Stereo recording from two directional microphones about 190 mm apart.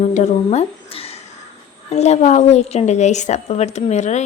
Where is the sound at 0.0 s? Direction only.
35° left (ahead or behind).